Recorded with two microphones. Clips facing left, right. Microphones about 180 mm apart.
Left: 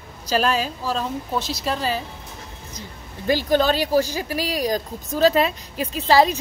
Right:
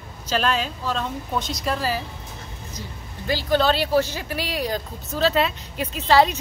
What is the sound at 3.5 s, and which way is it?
A woman's voice, 45° left (ahead or behind).